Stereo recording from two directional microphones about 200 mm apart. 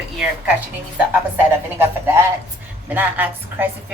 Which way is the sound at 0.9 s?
10° right (ahead or behind).